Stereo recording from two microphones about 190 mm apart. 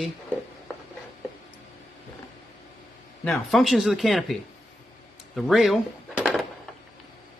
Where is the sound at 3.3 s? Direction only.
Centre (ahead or behind).